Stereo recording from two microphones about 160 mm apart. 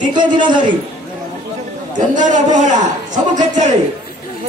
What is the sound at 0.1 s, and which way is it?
Speech, 30° right (ahead or behind).